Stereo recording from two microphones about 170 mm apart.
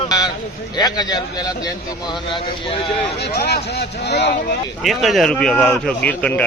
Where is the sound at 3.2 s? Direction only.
70° left (ahead or behind).